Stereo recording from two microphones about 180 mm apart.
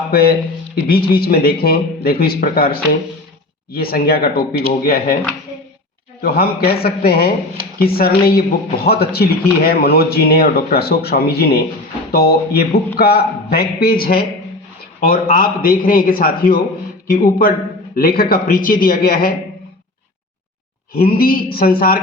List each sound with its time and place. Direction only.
0.1 s a man's voice: 55° left (ahead or behind)
6.2 s a man's voice: 60° left (ahead or behind)
21.0 s a man's voice: 50° left (ahead or behind)